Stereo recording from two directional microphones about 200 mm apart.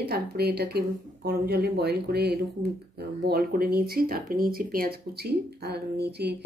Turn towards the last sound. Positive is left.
turn(degrees=-55)  # may be behind; listen again after turning